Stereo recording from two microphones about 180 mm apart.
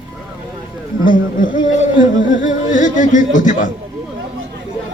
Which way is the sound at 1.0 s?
50° left (ahead or behind).